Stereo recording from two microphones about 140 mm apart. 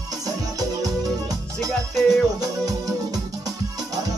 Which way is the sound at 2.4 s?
25° right (ahead or behind).